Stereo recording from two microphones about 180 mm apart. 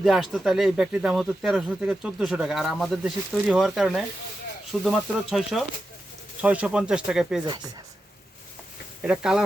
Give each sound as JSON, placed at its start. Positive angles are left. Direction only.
{"t": 0.0, "sound": "speech", "side_deg": 0}
{"t": 9.0, "sound": "speech", "side_deg": -5}